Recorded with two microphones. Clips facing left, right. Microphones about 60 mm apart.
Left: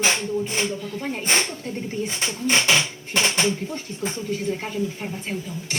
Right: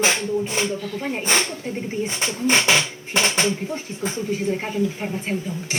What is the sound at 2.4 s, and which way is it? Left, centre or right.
Speech, centre.